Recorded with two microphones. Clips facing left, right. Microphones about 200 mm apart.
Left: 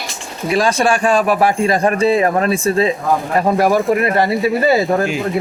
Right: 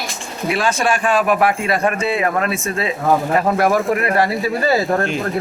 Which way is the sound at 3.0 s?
Centre (ahead or behind).